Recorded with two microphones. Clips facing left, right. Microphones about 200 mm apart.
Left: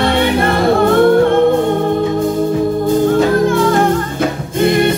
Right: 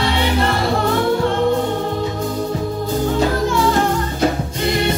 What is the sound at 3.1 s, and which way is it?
Music, 55° left (ahead or behind).